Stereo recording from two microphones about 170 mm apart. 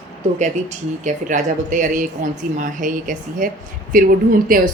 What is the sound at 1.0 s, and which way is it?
A woman's voice, 45° right (ahead or behind).